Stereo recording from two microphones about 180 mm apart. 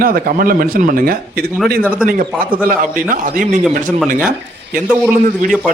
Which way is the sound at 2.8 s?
50° right (ahead or behind).